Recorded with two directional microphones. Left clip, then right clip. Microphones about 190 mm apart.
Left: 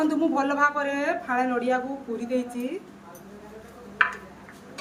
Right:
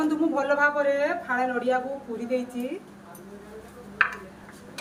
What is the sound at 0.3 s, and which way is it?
A woman's voice, 20° left (ahead or behind).